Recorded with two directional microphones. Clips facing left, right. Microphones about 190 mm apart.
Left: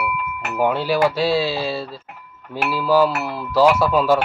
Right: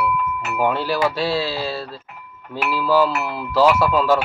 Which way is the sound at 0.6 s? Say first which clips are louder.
Left 2 dB; 10° left (ahead or behind).